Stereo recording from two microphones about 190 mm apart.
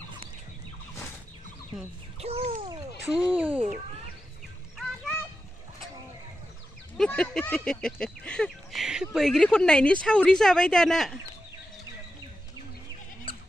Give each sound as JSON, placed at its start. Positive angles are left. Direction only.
{"t": 2.1, "sound": "a sound", "side_deg": -30}
{"t": 3.1, "sound": "speech", "side_deg": -5}
{"t": 7.0, "sound": "speech", "side_deg": 5}